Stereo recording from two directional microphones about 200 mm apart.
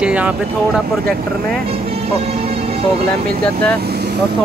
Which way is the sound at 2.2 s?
30° right (ahead or behind).